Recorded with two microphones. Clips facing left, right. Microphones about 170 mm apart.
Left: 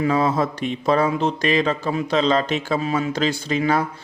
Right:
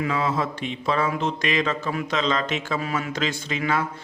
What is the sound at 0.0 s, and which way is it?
A man's voice, 40° left (ahead or behind).